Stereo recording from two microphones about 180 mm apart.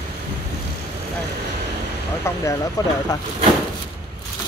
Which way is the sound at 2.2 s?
15° left (ahead or behind).